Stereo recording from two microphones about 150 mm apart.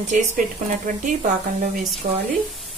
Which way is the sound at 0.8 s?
60° right (ahead or behind).